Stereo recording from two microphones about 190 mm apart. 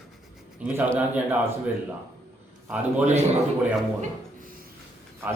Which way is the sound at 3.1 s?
35° right (ahead or behind).